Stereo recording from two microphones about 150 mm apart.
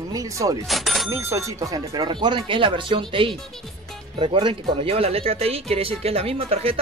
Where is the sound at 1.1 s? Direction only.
15° right (ahead or behind).